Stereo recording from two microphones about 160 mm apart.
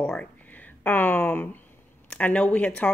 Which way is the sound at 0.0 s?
5° left (ahead or behind).